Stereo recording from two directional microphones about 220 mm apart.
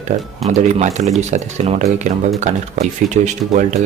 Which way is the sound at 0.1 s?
35° right (ahead or behind).